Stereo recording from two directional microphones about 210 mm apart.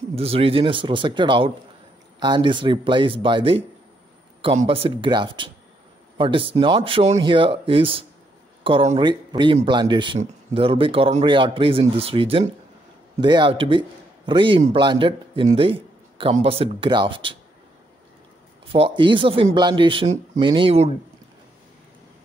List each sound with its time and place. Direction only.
0.1 s a man's voice: 30° right (ahead or behind)
18.7 s speech: 25° right (ahead or behind)